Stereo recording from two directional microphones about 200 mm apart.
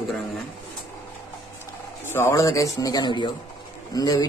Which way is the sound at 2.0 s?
10° left (ahead or behind).